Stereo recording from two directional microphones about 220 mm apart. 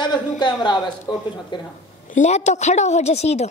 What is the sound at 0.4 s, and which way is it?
A woman's voice, 20° left (ahead or behind).